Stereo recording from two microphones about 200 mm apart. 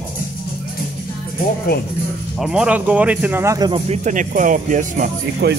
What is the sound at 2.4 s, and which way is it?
Speech, 5° right (ahead or behind).